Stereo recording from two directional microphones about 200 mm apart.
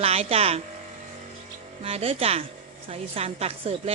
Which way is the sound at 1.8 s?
30° right (ahead or behind).